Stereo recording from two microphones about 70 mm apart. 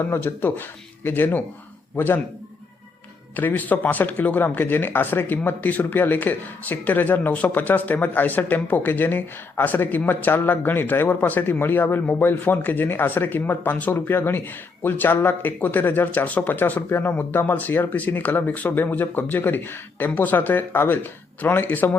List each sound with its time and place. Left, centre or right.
0.0 s a man's voice: left
3.3 s speech: left